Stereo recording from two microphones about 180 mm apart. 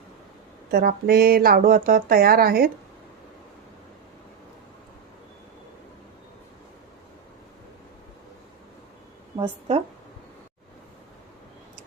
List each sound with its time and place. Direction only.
0.7 s speech: 60° right (ahead or behind)
9.4 s speech: 35° right (ahead or behind)